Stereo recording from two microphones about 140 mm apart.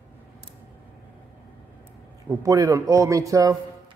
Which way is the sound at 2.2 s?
25° right (ahead or behind).